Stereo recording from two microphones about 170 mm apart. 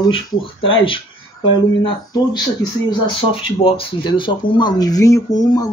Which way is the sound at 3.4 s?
30° left (ahead or behind).